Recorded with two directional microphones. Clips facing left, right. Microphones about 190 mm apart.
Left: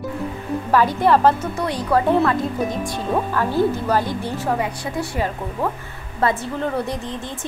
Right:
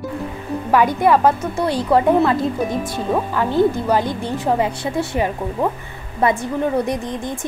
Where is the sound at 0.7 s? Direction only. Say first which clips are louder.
Right 2 dB; 10° right (ahead or behind).